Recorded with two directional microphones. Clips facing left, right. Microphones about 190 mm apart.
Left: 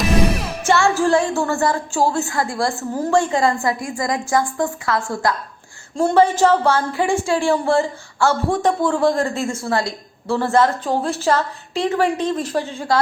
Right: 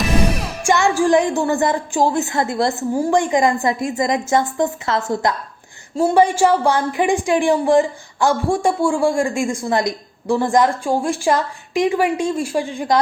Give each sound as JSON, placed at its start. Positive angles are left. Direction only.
{"t": 0.6, "sound": "a woman's voice", "side_deg": -15}
{"t": 6.0, "sound": "a woman's voice", "side_deg": -10}